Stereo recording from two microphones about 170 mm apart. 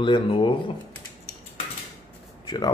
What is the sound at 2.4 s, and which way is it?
Speech, 25° left (ahead or behind).